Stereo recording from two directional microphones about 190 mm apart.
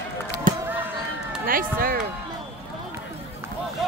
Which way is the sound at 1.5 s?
50° right (ahead or behind).